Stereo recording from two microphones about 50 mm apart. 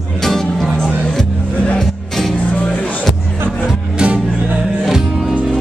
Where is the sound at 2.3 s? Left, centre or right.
Left.